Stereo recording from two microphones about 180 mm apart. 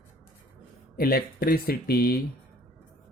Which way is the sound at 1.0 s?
55° left (ahead or behind).